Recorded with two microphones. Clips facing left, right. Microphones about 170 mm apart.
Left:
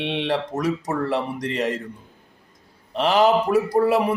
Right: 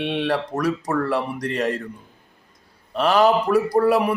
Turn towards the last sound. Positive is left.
turn(degrees=20)  # may be behind; listen again after turning